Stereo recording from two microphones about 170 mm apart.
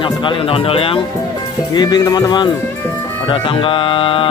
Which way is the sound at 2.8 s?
15° left (ahead or behind).